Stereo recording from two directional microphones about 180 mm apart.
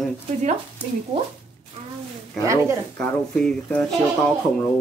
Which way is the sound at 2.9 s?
5° left (ahead or behind).